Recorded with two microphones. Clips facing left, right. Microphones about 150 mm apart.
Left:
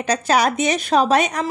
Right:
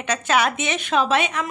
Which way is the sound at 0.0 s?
35° left (ahead or behind).